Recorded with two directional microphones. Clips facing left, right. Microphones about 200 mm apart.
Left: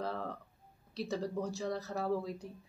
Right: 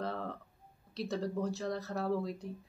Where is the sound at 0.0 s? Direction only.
Centre (ahead or behind).